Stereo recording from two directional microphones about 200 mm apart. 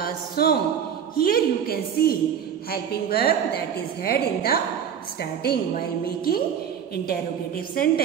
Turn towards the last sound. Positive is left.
turn(degrees=50)  # may be behind; listen again after turning